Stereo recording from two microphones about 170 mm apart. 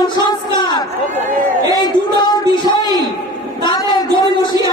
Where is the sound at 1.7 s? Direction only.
25° left (ahead or behind).